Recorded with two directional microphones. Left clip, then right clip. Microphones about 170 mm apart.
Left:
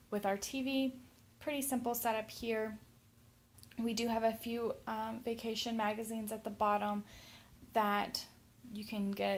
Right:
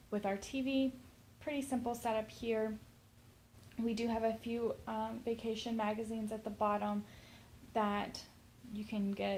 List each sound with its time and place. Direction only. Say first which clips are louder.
0.1 s a woman's voice: left 2 dB; 30° left (ahead or behind)
3.8 s a woman's voice: left 1 dB; 30° left (ahead or behind)